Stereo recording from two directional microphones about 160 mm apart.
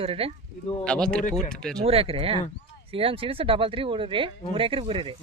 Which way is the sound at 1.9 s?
40° right (ahead or behind).